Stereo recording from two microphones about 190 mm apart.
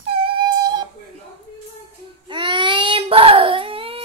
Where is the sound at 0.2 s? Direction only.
25° right (ahead or behind).